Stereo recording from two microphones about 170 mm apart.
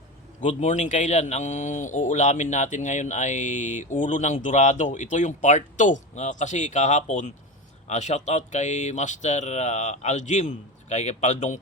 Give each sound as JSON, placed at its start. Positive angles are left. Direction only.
{"t": 0.4, "sound": "a man's voice", "side_deg": 45}